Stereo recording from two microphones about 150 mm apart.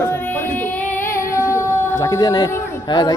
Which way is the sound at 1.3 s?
15° left (ahead or behind).